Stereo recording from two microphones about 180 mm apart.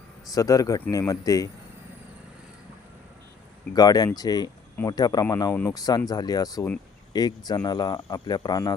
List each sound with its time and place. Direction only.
0.3 s speech: 20° left (ahead or behind)
3.8 s speech: 20° left (ahead or behind)